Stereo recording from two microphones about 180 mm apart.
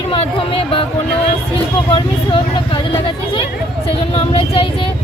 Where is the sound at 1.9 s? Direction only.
30° left (ahead or behind).